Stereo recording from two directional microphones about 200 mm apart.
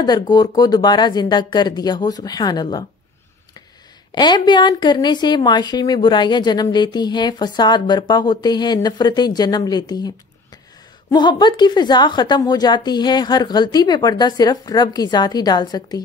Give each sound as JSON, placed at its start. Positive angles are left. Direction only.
{"t": 0.0, "sound": "a woman's voice", "side_deg": 20}
{"t": 4.1, "sound": "a woman's voice", "side_deg": 20}